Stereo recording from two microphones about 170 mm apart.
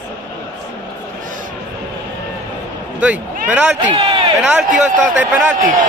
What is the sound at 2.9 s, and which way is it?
Speech, 5° right (ahead or behind).